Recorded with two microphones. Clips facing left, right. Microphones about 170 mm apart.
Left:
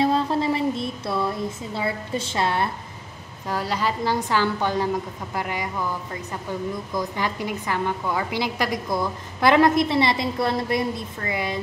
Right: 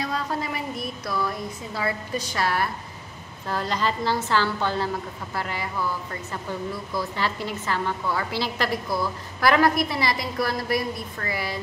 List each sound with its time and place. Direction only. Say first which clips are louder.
0.0 s a woman's voice: left 7 dB; 25° left (ahead or behind)
3.4 s a woman's voice: left 1 dB; 10° left (ahead or behind)